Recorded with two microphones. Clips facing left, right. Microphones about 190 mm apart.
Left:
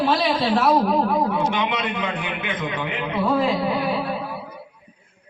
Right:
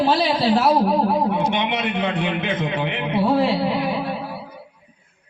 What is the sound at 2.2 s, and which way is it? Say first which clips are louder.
Speech: right 5 dB; 35° right (ahead or behind).